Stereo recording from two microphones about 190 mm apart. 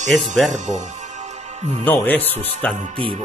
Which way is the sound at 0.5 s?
40° right (ahead or behind).